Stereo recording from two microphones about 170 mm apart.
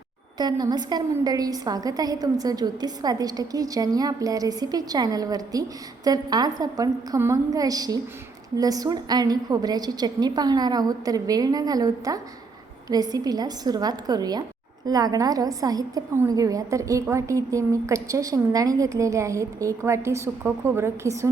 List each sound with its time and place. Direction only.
0.3 s a woman's voice: 25° right (ahead or behind)